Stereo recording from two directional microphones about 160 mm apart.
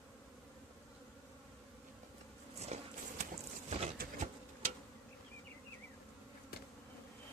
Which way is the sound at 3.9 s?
65° right (ahead or behind).